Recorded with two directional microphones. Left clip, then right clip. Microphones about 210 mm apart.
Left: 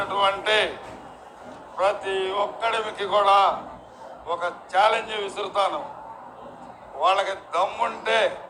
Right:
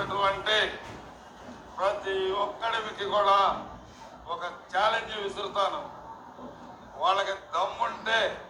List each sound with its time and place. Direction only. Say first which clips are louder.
0.1 s a sound: left 5 dB; 25° left (ahead or behind)
1.8 s a man's voice: left 5 dB; 25° left (ahead or behind)
7.0 s a man's voice: left 5 dB; 25° left (ahead or behind)